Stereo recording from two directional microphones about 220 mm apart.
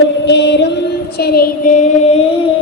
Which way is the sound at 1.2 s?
45° left (ahead or behind).